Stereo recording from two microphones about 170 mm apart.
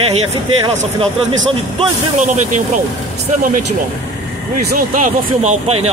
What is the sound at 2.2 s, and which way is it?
Speech, 50° right (ahead or behind).